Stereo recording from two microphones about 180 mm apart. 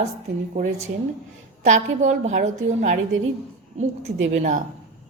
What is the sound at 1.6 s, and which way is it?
A woman's voice, 40° right (ahead or behind).